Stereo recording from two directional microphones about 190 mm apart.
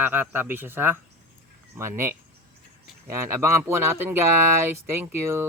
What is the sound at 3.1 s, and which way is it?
Speech, 15° right (ahead or behind).